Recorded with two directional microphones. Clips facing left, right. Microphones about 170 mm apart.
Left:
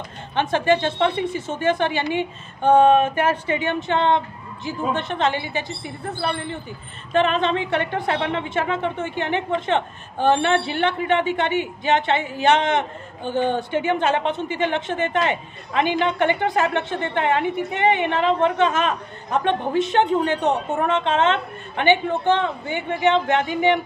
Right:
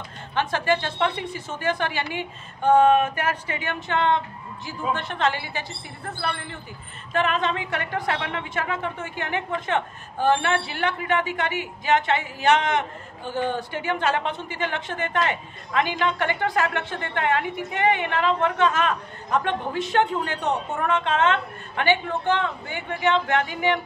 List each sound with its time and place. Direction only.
0.3 s a woman's voice: 20° left (ahead or behind)